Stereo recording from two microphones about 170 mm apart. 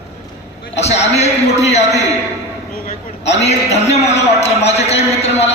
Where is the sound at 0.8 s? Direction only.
40° left (ahead or behind).